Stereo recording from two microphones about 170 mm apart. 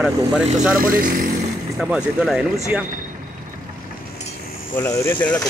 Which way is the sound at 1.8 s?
5° right (ahead or behind).